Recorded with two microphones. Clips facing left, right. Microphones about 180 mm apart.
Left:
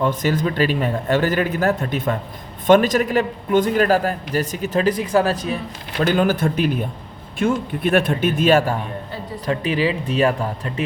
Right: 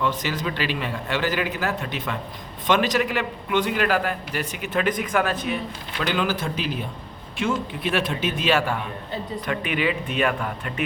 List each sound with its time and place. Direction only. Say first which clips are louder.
0.0 s a man's voice: left 6 dB; 45° left (ahead or behind)
6.0 s a man's voice: left 7 dB; 45° left (ahead or behind)
9.5 s a man's voice: left 5 dB; 35° left (ahead or behind)